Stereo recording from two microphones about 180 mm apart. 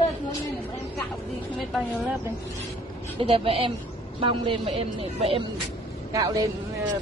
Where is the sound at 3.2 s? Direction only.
30° right (ahead or behind).